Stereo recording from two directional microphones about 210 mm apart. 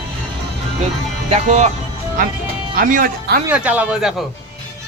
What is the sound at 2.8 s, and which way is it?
Speech, 40° right (ahead or behind).